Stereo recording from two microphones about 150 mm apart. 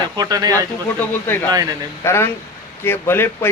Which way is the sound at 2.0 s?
15° left (ahead or behind).